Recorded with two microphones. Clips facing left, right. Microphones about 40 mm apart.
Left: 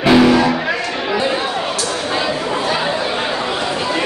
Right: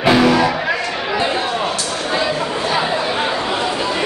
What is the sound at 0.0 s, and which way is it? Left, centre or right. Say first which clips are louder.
Music: left 2 dB; centre.